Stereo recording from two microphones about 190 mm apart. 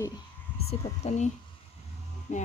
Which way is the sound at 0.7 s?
35° left (ahead or behind).